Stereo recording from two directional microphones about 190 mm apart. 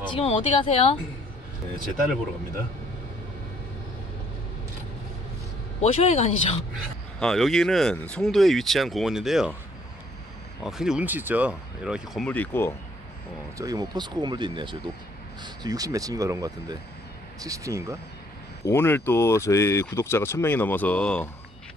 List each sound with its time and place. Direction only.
0.1 s speech: 30° left (ahead or behind)
5.8 s speech: 35° left (ahead or behind)
6.7 s speech: centre (ahead or behind)
10.6 s speech: 5° right (ahead or behind)
13.6 s speech: 20° right (ahead or behind)
18.7 s speech: 10° left (ahead or behind)